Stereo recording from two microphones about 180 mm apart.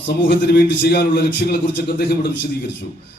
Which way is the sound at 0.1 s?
70° left (ahead or behind).